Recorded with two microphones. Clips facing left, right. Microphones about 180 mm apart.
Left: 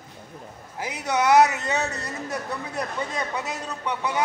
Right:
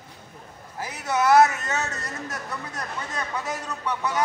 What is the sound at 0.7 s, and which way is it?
A man's voice, 15° left (ahead or behind).